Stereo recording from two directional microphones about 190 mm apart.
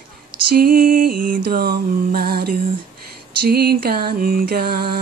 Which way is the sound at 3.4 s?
55° right (ahead or behind).